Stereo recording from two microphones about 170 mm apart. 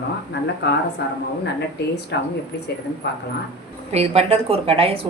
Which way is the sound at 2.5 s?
70° left (ahead or behind).